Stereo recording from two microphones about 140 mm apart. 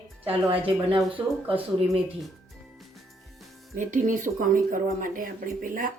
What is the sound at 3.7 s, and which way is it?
Speech, 65° right (ahead or behind).